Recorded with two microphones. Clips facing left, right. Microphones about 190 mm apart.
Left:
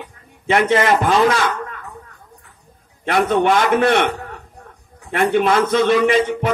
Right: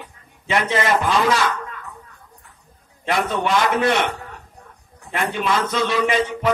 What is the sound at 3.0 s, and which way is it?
A man's voice, 55° left (ahead or behind).